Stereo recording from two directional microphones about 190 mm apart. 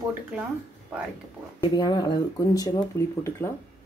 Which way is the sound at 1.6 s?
20° left (ahead or behind).